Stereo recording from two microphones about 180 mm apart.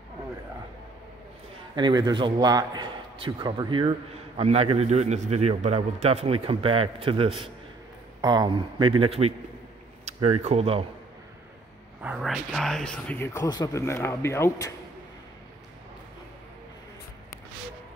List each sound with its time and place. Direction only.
1.8 s a man's voice: 25° right (ahead or behind)
12.0 s speech: 5° right (ahead or behind); by 14.7 s 15° left (ahead or behind)